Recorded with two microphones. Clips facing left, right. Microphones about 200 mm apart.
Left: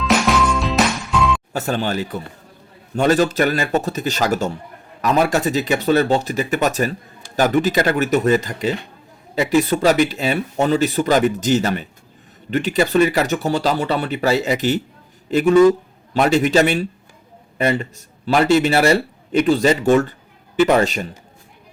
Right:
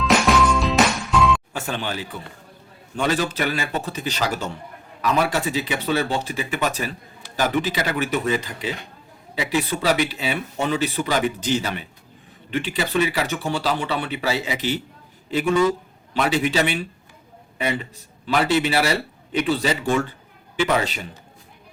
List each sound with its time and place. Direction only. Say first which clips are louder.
0.0 s music: left 1 dB; 5° left (ahead or behind)
1.5 s speech: left 7 dB; 40° left (ahead or behind)